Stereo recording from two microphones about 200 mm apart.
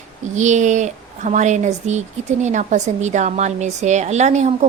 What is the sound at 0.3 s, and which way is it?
Speech, 35° right (ahead or behind).